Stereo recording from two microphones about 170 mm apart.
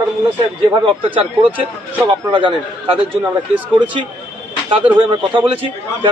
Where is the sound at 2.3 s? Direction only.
30° right (ahead or behind).